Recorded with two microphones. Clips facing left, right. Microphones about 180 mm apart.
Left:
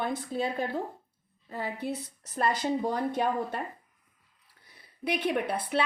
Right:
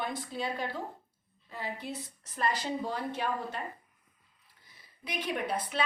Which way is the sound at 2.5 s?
50° left (ahead or behind).